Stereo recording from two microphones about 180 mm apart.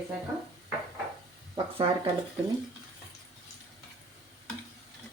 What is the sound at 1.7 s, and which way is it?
Speech, 30° right (ahead or behind).